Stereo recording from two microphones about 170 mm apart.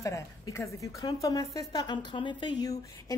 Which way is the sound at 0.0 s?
15° left (ahead or behind).